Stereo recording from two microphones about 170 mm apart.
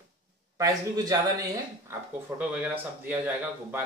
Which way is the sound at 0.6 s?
20° right (ahead or behind).